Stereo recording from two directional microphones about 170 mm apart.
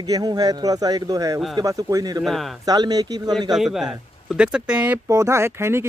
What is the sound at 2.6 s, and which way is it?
Speech, 25° right (ahead or behind).